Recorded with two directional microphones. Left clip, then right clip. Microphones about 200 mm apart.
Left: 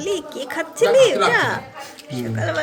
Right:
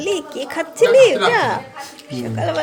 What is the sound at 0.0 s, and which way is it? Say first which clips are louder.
Speech: right 3 dB; 15° right (ahead or behind).